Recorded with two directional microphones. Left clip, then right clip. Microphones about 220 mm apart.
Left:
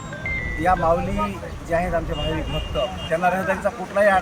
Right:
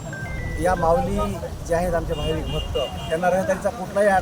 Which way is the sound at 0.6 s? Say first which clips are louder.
Even; 10° right (ahead or behind).